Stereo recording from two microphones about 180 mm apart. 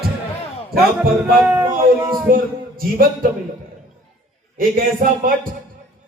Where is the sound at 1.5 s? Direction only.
20° right (ahead or behind).